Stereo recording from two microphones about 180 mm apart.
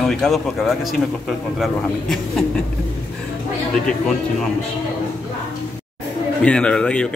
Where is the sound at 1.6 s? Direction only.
Centre (ahead or behind).